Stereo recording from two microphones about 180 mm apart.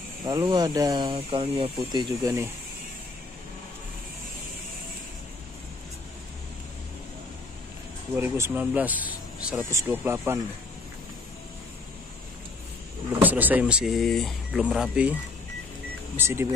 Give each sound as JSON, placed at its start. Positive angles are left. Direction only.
{"t": 0.2, "sound": "speech", "side_deg": -25}
{"t": 1.8, "sound": "speech", "side_deg": -20}
{"t": 8.2, "sound": "speech", "side_deg": -10}
{"t": 13.2, "sound": "speech", "side_deg": -10}
{"t": 16.2, "sound": "speech", "side_deg": -15}